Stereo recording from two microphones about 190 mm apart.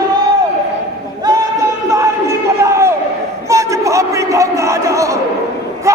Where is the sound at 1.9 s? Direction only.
15° right (ahead or behind).